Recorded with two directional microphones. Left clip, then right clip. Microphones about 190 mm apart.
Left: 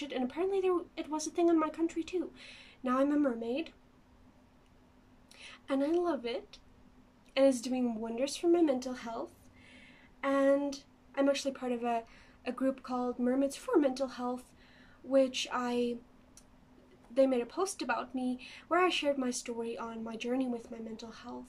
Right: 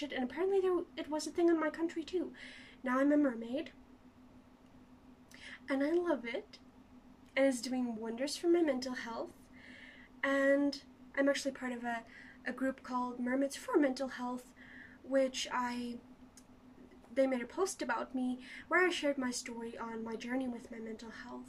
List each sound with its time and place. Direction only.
0.1 s speech: 15° left (ahead or behind)
5.4 s a woman's voice: 15° left (ahead or behind)
17.1 s speech: 15° left (ahead or behind)